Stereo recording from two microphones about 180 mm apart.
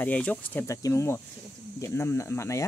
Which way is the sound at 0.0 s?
10° left (ahead or behind).